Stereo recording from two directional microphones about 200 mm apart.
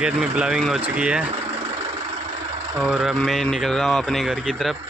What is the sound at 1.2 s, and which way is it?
Engine, 30° right (ahead or behind).